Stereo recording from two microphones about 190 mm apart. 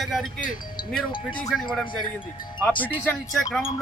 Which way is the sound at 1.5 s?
Centre (ahead or behind).